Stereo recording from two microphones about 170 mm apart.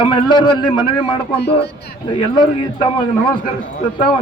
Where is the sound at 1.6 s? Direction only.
75° left (ahead or behind).